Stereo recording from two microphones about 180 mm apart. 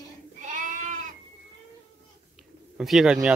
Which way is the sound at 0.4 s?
45° right (ahead or behind).